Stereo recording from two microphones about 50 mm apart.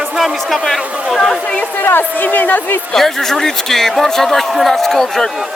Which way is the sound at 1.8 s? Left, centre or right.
Left.